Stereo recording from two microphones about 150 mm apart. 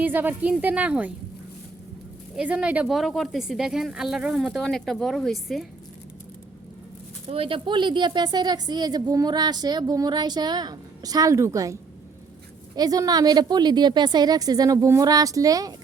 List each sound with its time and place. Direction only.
0.0 s speech: 15° right (ahead or behind)
2.3 s speech: 10° right (ahead or behind)
7.3 s a woman's voice: 35° right (ahead or behind)